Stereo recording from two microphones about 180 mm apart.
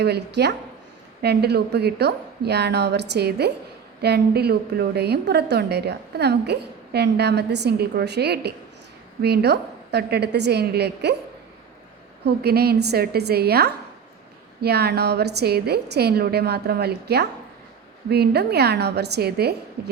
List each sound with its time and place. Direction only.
0.0 s a woman's voice: 65° right (ahead or behind)
12.2 s a woman's voice: 65° right (ahead or behind)